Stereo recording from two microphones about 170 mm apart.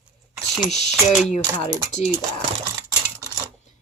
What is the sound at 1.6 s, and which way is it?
Speech, 40° left (ahead or behind).